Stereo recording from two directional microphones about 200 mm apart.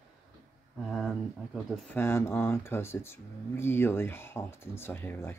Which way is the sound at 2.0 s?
10° left (ahead or behind).